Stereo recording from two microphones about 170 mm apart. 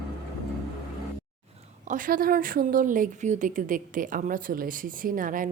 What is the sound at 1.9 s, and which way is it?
Speech, 55° right (ahead or behind).